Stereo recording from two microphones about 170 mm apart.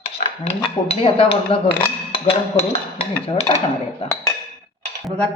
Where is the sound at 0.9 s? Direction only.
35° left (ahead or behind).